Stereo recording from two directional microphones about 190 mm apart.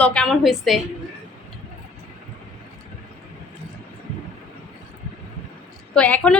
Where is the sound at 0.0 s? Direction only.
5° left (ahead or behind).